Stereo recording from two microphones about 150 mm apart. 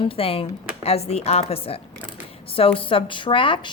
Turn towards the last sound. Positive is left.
turn(degrees=35)  # may be behind; listen again after turning